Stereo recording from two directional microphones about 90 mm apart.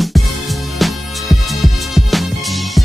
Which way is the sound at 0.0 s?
Centre (ahead or behind).